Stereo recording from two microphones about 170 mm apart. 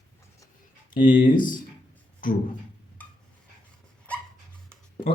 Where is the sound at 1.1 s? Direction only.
55° left (ahead or behind).